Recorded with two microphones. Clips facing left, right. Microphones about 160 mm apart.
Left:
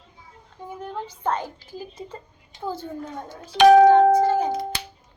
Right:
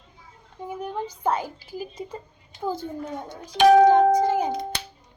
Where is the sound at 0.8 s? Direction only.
10° right (ahead or behind).